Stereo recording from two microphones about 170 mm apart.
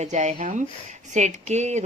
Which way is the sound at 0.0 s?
45° right (ahead or behind).